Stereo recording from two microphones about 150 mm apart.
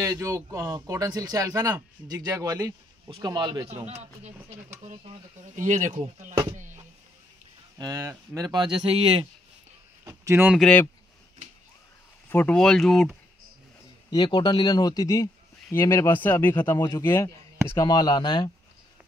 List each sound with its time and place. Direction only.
0.0 s speech: 20° right (ahead or behind)
3.8 s speech: 45° right (ahead or behind)
5.6 s speech: 55° right (ahead or behind)
6.5 s a sound: 55° right (ahead or behind)
7.7 s speech: 25° right (ahead or behind)
10.0 s a sound: 20° right (ahead or behind)
10.5 s speech: 5° left (ahead or behind)
12.3 s speech: 15° left (ahead or behind)
12.5 s speech: centre (ahead or behind)
14.1 s speech: 30° left (ahead or behind)